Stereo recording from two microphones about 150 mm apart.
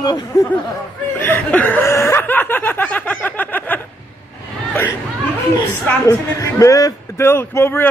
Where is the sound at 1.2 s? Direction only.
15° left (ahead or behind).